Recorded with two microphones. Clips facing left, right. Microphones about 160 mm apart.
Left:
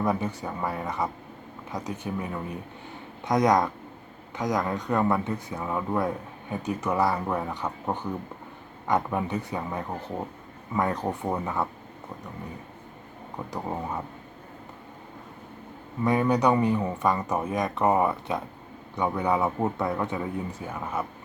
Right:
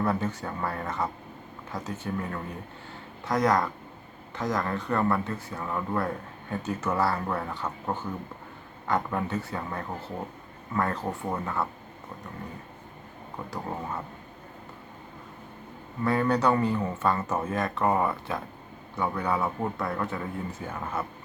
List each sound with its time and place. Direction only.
0.0 s speech: 15° left (ahead or behind)
13.5 s speech: 15° left (ahead or behind)
16.0 s speech: 15° left (ahead or behind)